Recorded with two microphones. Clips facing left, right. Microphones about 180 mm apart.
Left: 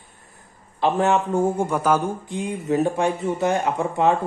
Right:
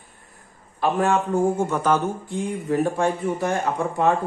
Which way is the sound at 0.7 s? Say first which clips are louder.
Left 1 dB; 25° left (ahead or behind).